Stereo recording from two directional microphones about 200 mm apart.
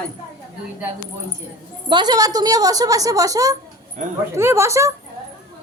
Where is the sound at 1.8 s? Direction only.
20° right (ahead or behind).